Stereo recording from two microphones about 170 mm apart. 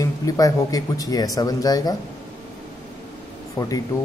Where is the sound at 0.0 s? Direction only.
20° left (ahead or behind).